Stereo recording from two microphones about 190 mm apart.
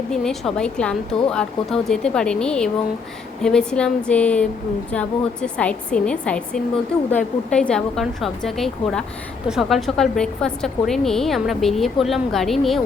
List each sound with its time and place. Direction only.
0.1 s a woman's voice: centre (ahead or behind)